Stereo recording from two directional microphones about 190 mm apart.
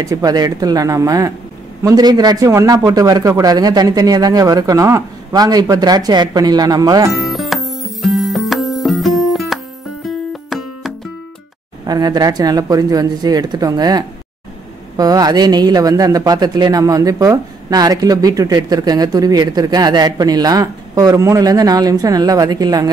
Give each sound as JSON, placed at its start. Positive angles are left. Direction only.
{"t": 0.0, "sound": "speech", "side_deg": -20}
{"t": 7.1, "sound": "music", "side_deg": 0}
{"t": 11.8, "sound": "speech", "side_deg": -20}